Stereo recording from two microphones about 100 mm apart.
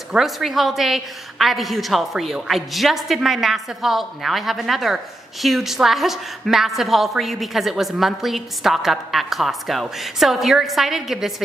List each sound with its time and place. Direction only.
0.1 s a woman's voice: centre (ahead or behind)